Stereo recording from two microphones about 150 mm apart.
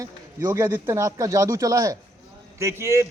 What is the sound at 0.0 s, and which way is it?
A man's voice, 20° right (ahead or behind).